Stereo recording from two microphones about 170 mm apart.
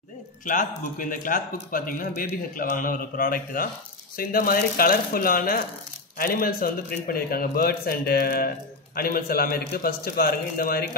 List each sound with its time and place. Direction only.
0.5 s speech: 50° left (ahead or behind)